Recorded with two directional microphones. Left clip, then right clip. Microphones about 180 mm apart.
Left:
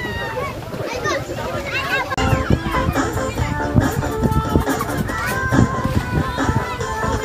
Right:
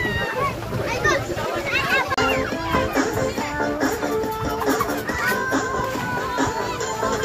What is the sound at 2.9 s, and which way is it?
Music, 20° right (ahead or behind).